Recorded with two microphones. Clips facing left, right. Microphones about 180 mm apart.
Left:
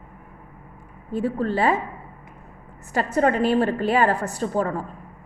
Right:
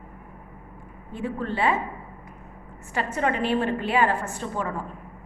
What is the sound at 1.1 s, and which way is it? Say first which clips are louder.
Speech: left 5 dB; 40° left (ahead or behind).